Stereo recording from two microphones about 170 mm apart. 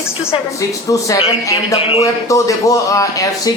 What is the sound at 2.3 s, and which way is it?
Speech, 20° left (ahead or behind).